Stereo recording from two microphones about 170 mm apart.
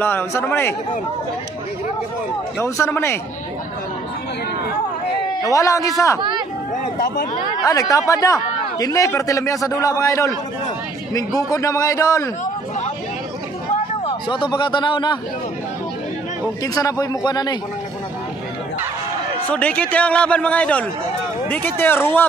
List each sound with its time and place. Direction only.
0.0 s a man's voice: 15° left (ahead or behind)
2.6 s a man's voice: 15° left (ahead or behind)
5.4 s a man's voice: 20° left (ahead or behind)
6.8 s speech: 55° left (ahead or behind)
7.6 s a man's voice: 20° left (ahead or behind)
14.0 s a man's voice: 30° left (ahead or behind)
16.6 s a man's voice: 20° left (ahead or behind)
19.5 s a man's voice: 5° left (ahead or behind)